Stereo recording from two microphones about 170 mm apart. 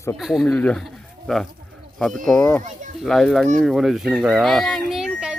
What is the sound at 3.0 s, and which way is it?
Speech, centre (ahead or behind).